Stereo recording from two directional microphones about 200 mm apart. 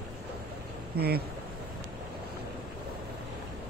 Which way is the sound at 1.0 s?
50° right (ahead or behind).